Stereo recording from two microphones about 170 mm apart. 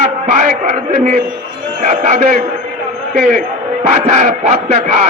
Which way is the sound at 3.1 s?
50° right (ahead or behind).